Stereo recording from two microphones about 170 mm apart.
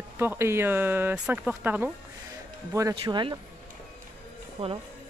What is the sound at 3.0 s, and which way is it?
Speech, 25° right (ahead or behind).